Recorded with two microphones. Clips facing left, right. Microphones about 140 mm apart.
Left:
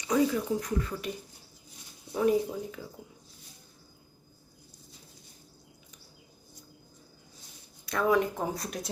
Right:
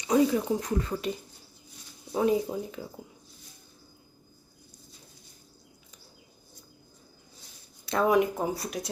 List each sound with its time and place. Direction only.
0.1 s speech: 25° right (ahead or behind)
2.1 s speech: 25° right (ahead or behind)
7.9 s speech: 20° right (ahead or behind)
8.5 s speech: 5° right (ahead or behind)